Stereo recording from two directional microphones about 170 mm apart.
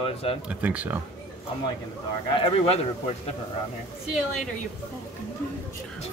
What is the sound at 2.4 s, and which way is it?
Speech, 35° left (ahead or behind).